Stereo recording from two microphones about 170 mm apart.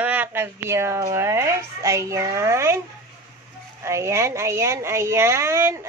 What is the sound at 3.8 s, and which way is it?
Speech, 15° right (ahead or behind).